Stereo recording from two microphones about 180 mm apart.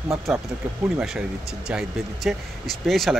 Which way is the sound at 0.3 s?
Centre (ahead or behind).